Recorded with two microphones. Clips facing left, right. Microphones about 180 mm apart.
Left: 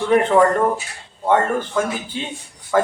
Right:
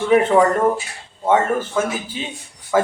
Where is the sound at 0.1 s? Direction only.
5° right (ahead or behind).